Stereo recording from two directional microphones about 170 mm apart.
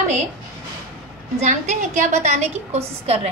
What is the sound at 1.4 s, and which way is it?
A woman's voice, 45° right (ahead or behind).